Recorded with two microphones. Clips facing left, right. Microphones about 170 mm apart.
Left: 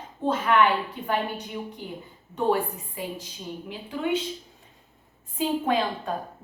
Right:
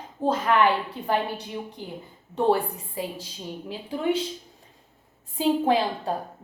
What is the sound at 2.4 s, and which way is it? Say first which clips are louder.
A woman's voice: right 2 dB; 35° right (ahead or behind).